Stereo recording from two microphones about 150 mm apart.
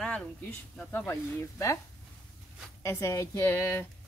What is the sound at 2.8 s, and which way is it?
Speech, 20° left (ahead or behind).